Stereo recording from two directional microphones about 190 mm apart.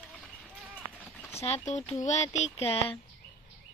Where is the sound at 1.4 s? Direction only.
35° left (ahead or behind).